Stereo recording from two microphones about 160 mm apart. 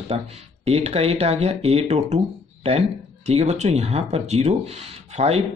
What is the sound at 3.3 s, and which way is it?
Speech, 40° right (ahead or behind).